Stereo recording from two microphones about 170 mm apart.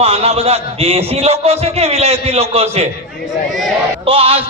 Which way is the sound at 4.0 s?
35° right (ahead or behind).